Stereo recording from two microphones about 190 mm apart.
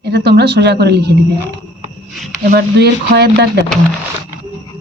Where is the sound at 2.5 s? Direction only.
60° right (ahead or behind).